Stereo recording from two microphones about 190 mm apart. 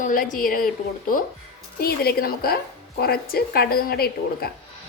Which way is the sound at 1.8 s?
55° left (ahead or behind).